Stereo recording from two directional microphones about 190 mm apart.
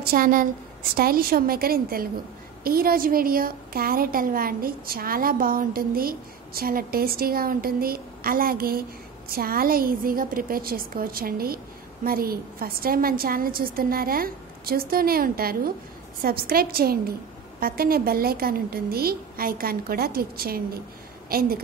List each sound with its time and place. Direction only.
0.0 s a woman's voice: 50° right (ahead or behind)